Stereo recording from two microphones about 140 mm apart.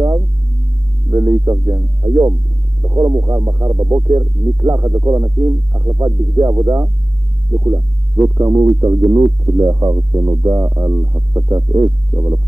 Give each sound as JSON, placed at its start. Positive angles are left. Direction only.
{"t": 1.1, "sound": "speech", "side_deg": -25}
{"t": 2.8, "sound": "speech", "side_deg": -25}